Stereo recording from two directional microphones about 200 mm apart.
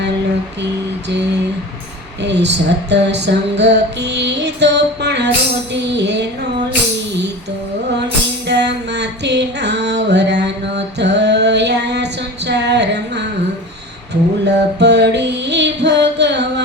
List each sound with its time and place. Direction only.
2.2 s music: 60° right (ahead or behind)
8.4 s music: 60° right (ahead or behind)
12.5 s a sound: 55° right (ahead or behind)
14.1 s music: 60° right (ahead or behind)